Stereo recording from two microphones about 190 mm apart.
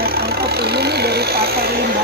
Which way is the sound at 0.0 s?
55° right (ahead or behind).